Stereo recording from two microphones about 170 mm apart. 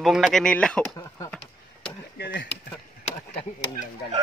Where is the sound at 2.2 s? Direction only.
90° left.